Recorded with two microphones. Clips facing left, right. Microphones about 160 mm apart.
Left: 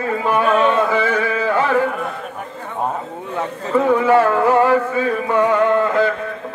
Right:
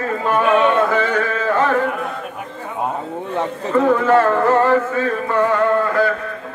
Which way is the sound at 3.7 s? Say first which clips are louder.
Even; 10° left (ahead or behind).